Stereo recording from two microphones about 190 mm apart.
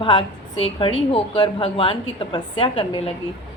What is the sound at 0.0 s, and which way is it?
A woman's voice, 25° left (ahead or behind).